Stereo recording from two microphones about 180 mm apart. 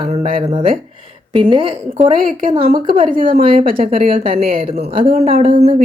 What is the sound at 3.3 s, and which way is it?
Speech, 30° right (ahead or behind).